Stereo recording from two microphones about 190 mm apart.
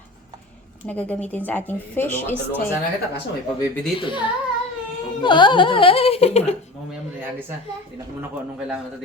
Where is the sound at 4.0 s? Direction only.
25° left (ahead or behind).